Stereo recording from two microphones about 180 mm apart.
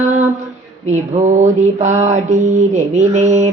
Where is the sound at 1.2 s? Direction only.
40° right (ahead or behind).